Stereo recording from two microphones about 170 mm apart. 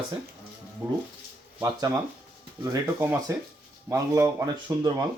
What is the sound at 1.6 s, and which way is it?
Speech, 20° right (ahead or behind).